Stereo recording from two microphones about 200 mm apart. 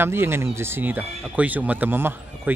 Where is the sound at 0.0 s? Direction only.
10° right (ahead or behind).